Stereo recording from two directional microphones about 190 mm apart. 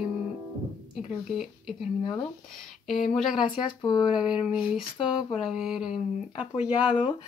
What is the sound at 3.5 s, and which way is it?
Speech, 25° left (ahead or behind).